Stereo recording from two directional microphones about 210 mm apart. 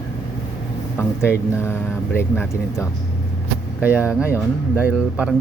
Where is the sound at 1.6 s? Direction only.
10° left (ahead or behind).